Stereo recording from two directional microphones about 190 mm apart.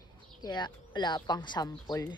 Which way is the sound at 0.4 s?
20° left (ahead or behind).